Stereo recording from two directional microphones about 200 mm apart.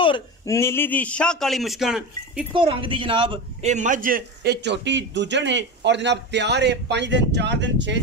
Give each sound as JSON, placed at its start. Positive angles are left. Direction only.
{"t": 0.0, "sound": "speech", "side_deg": 25}
{"t": 0.6, "sound": "a man's voice", "side_deg": 10}
{"t": 2.5, "sound": "a man's voice", "side_deg": -25}